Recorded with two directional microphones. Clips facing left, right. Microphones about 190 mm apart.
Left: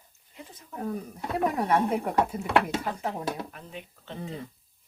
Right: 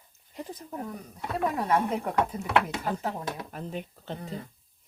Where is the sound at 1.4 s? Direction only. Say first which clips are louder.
Left 1 dB; 15° left (ahead or behind).